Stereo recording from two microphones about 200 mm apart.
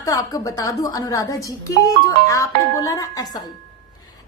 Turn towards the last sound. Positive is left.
turn(degrees=15)  # may be behind; listen again after turning